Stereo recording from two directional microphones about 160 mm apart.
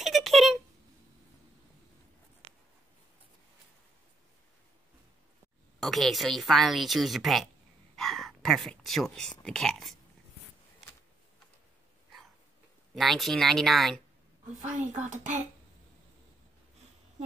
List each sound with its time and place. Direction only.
0.0 s a sound: centre (ahead or behind)
5.8 s speech: centre (ahead or behind)
12.9 s speech: centre (ahead or behind)
14.6 s speech: 50° right (ahead or behind)